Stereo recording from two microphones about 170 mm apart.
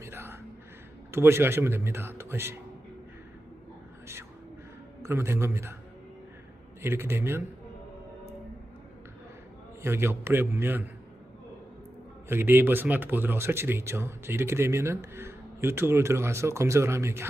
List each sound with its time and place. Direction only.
0.0 s music: 15° right (ahead or behind)
1.1 s speech: 15° right (ahead or behind)
5.0 s speech: 15° right (ahead or behind)
6.8 s speech: 15° right (ahead or behind)
9.8 s speech: 15° right (ahead or behind)
12.3 s speech: 15° right (ahead or behind)